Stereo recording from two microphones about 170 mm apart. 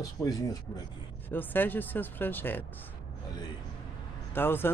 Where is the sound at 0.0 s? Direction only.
20° left (ahead or behind).